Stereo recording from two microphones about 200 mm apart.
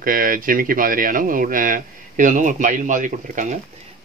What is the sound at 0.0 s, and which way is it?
Speech, 45° right (ahead or behind).